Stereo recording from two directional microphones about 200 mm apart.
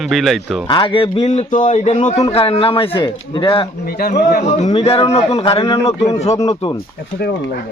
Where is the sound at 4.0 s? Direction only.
45° left (ahead or behind).